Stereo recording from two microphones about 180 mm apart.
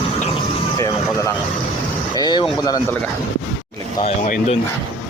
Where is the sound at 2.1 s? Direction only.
25° left (ahead or behind).